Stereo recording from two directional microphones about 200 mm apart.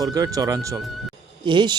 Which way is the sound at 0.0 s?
20° right (ahead or behind).